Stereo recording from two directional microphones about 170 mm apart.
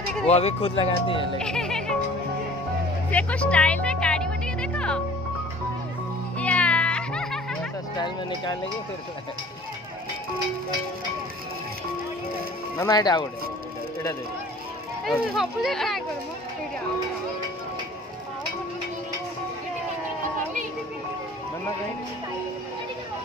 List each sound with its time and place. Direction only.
0.3 s speech: 35° left (ahead or behind)
1.4 s music: 5° left (ahead or behind)
3.1 s music: 10° left (ahead or behind)
6.3 s music: 5° left (ahead or behind)
8.0 s speech: 25° left (ahead or behind)
12.7 s speech: 20° left (ahead or behind)
15.0 s speech: centre (ahead or behind)